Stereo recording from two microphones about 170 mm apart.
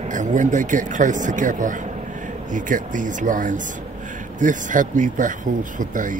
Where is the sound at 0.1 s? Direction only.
50° right (ahead or behind).